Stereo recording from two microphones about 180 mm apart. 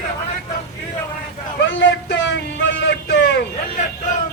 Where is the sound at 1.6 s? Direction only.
90° left.